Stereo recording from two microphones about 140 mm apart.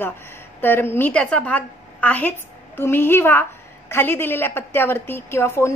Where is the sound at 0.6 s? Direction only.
15° left (ahead or behind).